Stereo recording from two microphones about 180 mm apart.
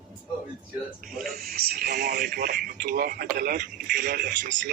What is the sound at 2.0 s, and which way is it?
Speech, 45° right (ahead or behind).